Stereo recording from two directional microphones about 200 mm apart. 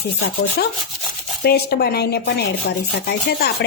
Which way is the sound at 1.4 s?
55° left (ahead or behind).